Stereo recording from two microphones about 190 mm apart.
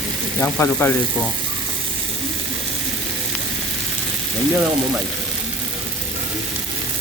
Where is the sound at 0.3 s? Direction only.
10° left (ahead or behind).